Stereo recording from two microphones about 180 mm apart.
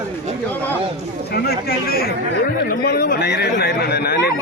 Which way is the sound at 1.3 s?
60° left (ahead or behind).